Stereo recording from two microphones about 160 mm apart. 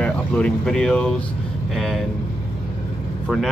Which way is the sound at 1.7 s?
Centre (ahead or behind).